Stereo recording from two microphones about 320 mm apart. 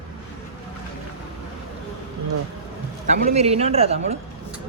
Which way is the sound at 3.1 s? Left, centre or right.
Right.